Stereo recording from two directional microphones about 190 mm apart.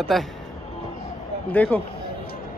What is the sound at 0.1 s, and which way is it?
Speech, centre (ahead or behind).